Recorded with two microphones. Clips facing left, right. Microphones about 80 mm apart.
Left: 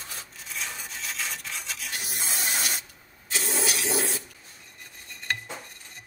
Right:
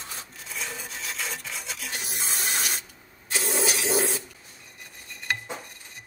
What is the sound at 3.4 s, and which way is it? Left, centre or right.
Toilet flush, centre.